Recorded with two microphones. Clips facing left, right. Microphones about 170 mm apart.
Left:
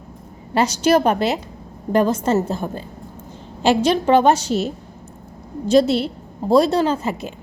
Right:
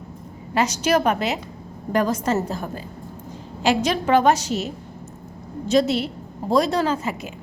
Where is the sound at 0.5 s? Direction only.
30° left (ahead or behind).